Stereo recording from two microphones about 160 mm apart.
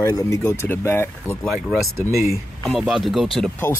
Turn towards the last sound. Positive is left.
turn(degrees=0)  # may be behind; listen again after turning